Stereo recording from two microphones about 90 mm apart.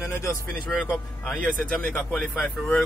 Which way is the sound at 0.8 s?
10° left (ahead or behind).